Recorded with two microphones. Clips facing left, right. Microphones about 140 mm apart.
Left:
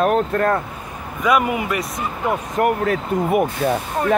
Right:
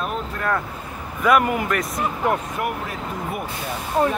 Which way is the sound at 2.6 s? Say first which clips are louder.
Left 8 dB; 60° left (ahead or behind).